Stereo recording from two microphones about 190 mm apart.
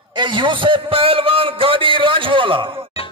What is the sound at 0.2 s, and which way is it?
A man's voice, 25° right (ahead or behind).